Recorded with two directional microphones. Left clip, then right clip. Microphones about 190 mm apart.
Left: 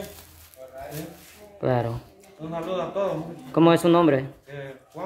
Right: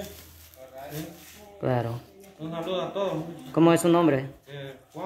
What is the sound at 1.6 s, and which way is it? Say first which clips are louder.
A man's voice: left 3 dB; 10° left (ahead or behind).